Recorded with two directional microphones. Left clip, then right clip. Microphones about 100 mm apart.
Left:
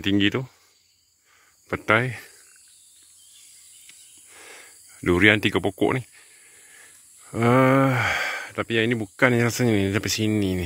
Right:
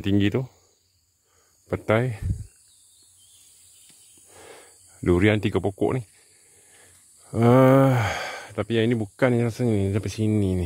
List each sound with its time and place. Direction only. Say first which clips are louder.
0.0 s speech: left 2 dB; 25° right (ahead or behind)
1.9 s speech: left 3 dB; 25° right (ahead or behind)
4.3 s a sound: left 1 dB; 45° right (ahead or behind)
5.0 s speech: left 3 dB; 20° right (ahead or behind)
6.8 s speech: left 4 dB; 25° right (ahead or behind)
9.5 s speech: left 3 dB; 10° left (ahead or behind)
10.3 s speech: left 1 dB; 15° right (ahead or behind)